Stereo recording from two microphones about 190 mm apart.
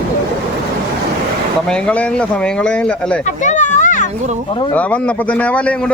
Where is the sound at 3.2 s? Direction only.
40° left (ahead or behind).